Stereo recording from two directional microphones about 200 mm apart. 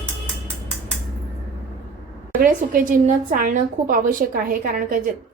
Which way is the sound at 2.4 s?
45° right (ahead or behind).